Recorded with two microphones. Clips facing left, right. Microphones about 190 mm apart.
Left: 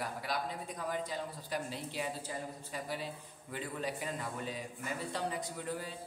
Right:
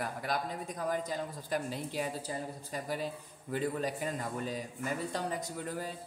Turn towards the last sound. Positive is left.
turn(degrees=-45)  # may be behind; listen again after turning